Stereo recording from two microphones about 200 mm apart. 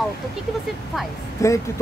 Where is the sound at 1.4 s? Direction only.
15° left (ahead or behind).